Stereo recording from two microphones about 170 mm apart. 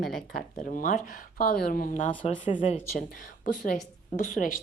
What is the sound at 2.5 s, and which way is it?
A woman's voice, 45° left (ahead or behind).